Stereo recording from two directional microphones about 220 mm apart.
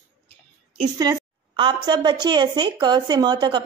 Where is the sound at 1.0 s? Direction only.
20° right (ahead or behind).